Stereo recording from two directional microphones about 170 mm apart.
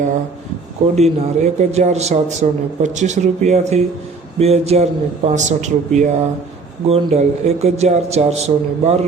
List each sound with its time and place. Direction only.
0.9 s a man's voice: 40° right (ahead or behind)